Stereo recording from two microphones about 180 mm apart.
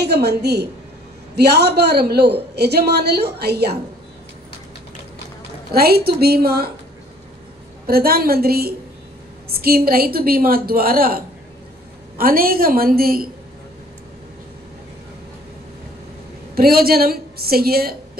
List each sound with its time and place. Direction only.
0.0 s a woman's voice: 65° right (ahead or behind)
5.7 s a woman's voice: 60° right (ahead or behind)
7.8 s a woman's voice: 55° right (ahead or behind)
16.5 s a woman's voice: 55° right (ahead or behind)